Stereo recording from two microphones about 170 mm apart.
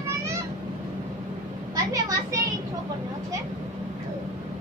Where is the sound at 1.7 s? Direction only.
20° right (ahead or behind).